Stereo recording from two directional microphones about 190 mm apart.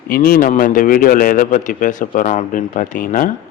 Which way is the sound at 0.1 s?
50° left (ahead or behind).